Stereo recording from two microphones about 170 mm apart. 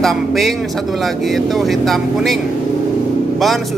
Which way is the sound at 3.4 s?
Centre (ahead or behind).